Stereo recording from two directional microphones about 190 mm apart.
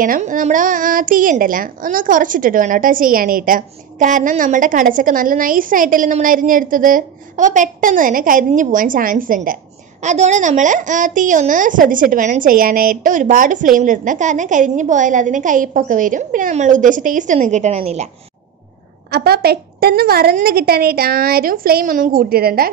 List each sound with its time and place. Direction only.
0.0 s a woman's voice: 45° right (ahead or behind)
19.0 s a woman's voice: 55° right (ahead or behind)